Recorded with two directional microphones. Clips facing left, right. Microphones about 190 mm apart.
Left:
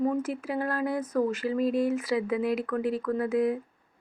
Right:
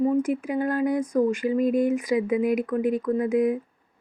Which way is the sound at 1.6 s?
50° right (ahead or behind).